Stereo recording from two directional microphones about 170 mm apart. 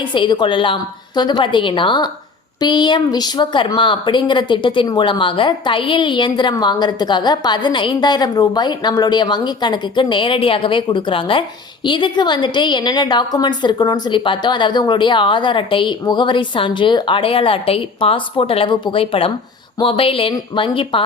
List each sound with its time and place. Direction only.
0.0 s speech: 30° left (ahead or behind)